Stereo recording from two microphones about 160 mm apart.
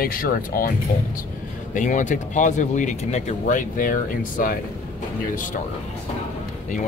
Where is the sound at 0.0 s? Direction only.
65° left (ahead or behind).